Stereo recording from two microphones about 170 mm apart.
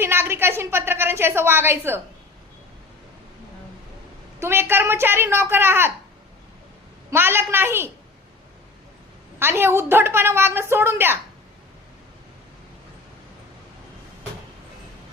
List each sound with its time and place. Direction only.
0.0 s a woman's voice: 15° right (ahead or behind)
4.4 s a woman's voice: 15° right (ahead or behind)
7.1 s a woman's voice: 15° right (ahead or behind)
9.4 s a woman's voice: 15° right (ahead or behind)